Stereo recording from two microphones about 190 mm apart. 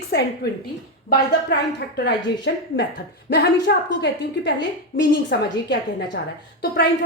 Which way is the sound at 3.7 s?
65° left (ahead or behind).